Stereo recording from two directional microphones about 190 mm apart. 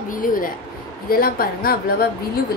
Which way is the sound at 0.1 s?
45° left (ahead or behind).